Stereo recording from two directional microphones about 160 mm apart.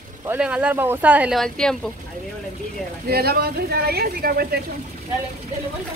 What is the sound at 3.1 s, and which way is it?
Speech, 75° right (ahead or behind).